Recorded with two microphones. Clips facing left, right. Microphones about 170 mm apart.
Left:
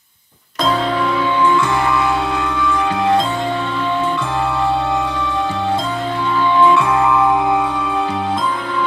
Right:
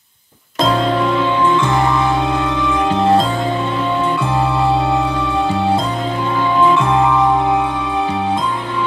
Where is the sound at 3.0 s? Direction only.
30° right (ahead or behind).